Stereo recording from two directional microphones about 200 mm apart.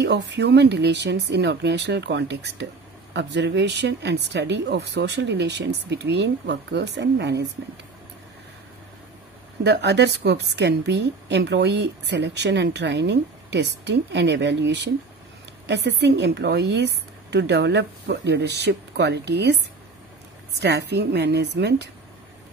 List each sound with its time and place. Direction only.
0.0 s speech: 60° right (ahead or behind)
9.6 s speech: 60° right (ahead or behind)
20.6 s speech: 60° right (ahead or behind)